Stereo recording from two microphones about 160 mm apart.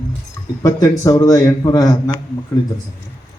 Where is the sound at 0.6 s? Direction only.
20° left (ahead or behind).